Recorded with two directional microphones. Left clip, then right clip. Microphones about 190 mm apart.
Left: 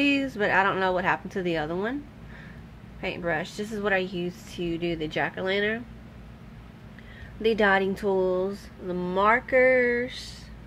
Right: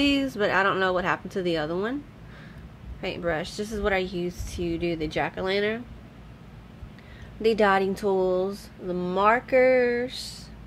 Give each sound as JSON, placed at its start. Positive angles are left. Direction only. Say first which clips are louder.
{"t": 0.0, "sound": "a woman's voice", "louder": "right 1 dB", "side_deg": -15}
{"t": 3.0, "sound": "a woman's voice", "louder": "even", "side_deg": -15}
{"t": 7.4, "sound": "speech", "louder": "right 1 dB", "side_deg": -20}